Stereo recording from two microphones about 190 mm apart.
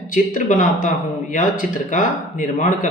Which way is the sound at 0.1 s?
45° left (ahead or behind).